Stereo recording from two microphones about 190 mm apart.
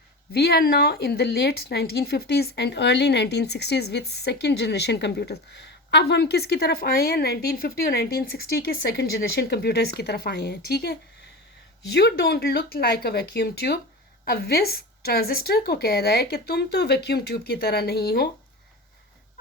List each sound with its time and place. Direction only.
0.3 s a woman's voice: 60° left (ahead or behind)